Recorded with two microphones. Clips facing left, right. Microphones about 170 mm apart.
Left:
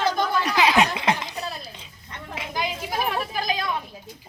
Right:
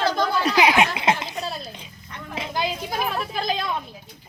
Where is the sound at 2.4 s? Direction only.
30° right (ahead or behind).